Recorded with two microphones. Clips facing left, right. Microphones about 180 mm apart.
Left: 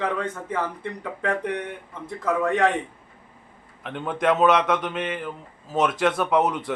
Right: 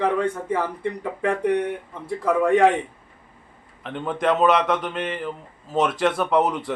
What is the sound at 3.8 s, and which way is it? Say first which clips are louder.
Speech: right 1 dB; centre (ahead or behind).